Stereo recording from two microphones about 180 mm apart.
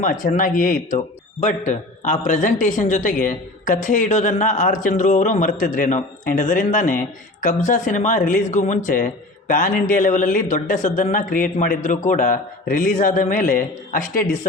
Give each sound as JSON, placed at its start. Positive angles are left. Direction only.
{"t": 0.0, "sound": "a man's voice", "side_deg": 45}